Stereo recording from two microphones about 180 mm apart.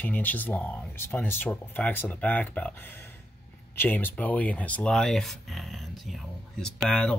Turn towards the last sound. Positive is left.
turn(degrees=5)  # may be behind; listen again after turning